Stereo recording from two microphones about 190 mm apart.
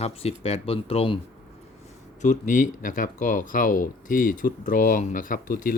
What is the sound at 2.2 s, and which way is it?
Speech, 40° left (ahead or behind).